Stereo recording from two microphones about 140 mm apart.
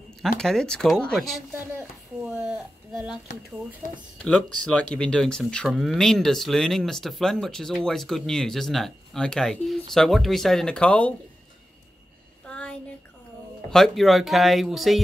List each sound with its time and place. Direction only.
0.4 s speech: 5° left (ahead or behind)
1.6 s a sound: 10° right (ahead or behind)
3.8 s speech: 60° left (ahead or behind)
4.2 s speech: 5° left (ahead or behind)
12.4 s a sound: 5° left (ahead or behind)
13.7 s speech: 5° left (ahead or behind)